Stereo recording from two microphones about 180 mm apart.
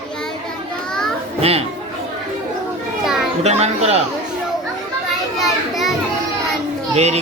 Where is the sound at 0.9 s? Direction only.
5° left (ahead or behind).